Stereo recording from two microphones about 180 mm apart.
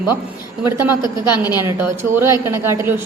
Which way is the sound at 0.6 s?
15° right (ahead or behind).